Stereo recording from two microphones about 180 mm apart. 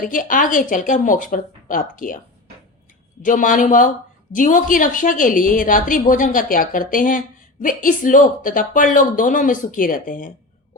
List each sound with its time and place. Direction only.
0.0 s a woman's voice: 50° left (ahead or behind)
3.2 s a woman's voice: 45° left (ahead or behind)